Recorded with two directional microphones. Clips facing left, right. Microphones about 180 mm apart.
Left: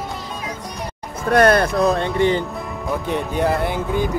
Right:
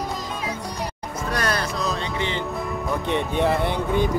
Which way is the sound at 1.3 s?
55° left (ahead or behind).